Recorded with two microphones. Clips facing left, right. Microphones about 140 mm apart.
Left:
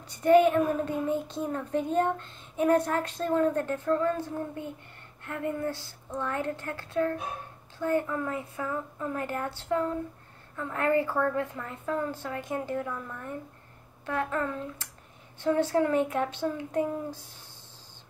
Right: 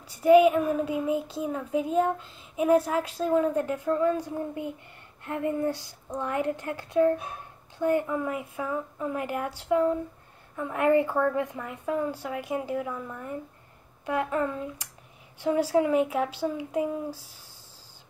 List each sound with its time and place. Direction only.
0.1 s a child's voice: 5° right (ahead or behind)